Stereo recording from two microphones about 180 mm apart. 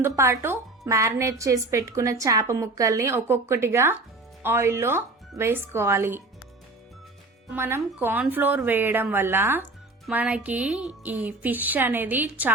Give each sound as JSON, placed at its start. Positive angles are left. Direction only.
{"t": 0.0, "sound": "speech", "side_deg": -15}
{"t": 7.5, "sound": "speech", "side_deg": -10}